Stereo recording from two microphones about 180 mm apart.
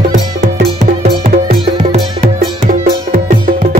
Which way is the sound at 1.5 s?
35° right (ahead or behind).